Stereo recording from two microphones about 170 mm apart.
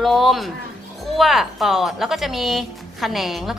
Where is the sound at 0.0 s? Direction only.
Centre (ahead or behind).